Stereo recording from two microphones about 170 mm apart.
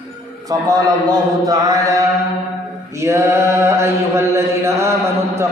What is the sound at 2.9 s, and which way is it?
Mantra, 15° right (ahead or behind).